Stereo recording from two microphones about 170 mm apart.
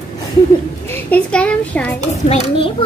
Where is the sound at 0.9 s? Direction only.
10° left (ahead or behind).